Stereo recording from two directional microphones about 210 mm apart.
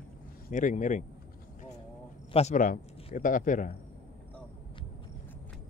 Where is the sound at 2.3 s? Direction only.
35° left (ahead or behind).